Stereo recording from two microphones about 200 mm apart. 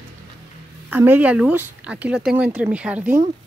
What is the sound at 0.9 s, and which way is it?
Speech, 10° right (ahead or behind).